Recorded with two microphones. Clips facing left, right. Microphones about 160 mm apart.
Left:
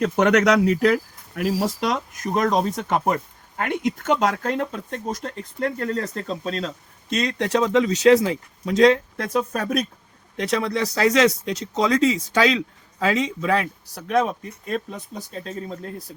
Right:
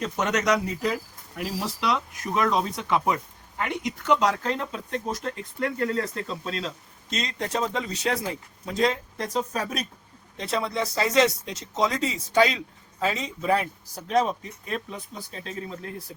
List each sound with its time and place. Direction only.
0.0 s speech: 65° left (ahead or behind); by 0.9 s 80° left
1.4 s speech: 55° left (ahead or behind)
7.1 s speech: 65° left (ahead or behind)
10.3 s speech: 90° left; by 15.0 s 50° left (ahead or behind)